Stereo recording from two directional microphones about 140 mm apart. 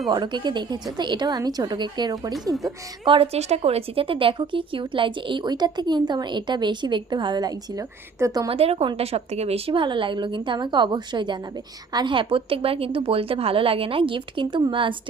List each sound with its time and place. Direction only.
0.1 s a woman's voice: 30° right (ahead or behind)
3.1 s a woman's voice: 45° right (ahead or behind); by 8.4 s 25° right (ahead or behind)
8.4 s a woman's voice: 45° right (ahead or behind)